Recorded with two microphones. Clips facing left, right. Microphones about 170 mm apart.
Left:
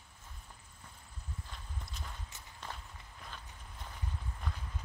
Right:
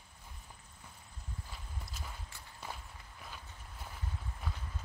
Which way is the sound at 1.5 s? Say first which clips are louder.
Even; 5° right (ahead or behind).